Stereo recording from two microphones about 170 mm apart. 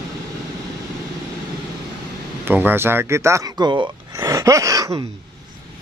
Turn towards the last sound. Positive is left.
turn(degrees=-20)  # may be behind; listen again after turning